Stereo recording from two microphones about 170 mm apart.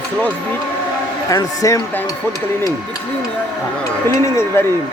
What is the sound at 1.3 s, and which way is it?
Speech, 20° left (ahead or behind).